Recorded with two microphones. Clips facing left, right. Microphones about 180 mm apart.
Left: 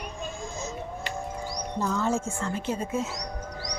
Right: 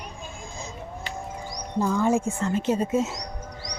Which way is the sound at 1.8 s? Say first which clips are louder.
Right 5 dB; 15° right (ahead or behind).